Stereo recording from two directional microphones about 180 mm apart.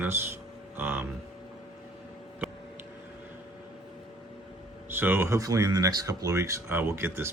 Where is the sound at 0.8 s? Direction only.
10° right (ahead or behind).